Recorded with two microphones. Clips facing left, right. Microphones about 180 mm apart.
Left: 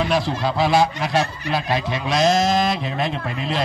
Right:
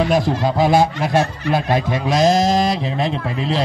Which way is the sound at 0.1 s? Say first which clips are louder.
Right 4 dB; 45° right (ahead or behind).